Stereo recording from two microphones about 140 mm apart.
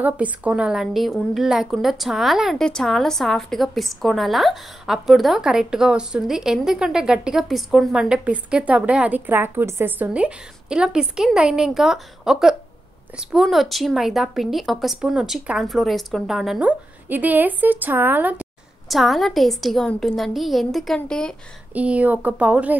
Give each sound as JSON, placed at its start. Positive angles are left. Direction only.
{"t": 0.0, "sound": "a woman's voice", "side_deg": -10}
{"t": 18.9, "sound": "a woman's voice", "side_deg": 0}
{"t": 21.7, "sound": "speech", "side_deg": -10}